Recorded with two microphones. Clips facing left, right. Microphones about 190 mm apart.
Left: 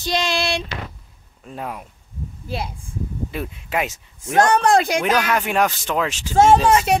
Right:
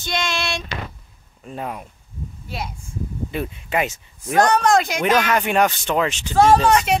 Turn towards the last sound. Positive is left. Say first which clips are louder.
# left 1 dB
turn(degrees=25)  # may be behind; listen again after turning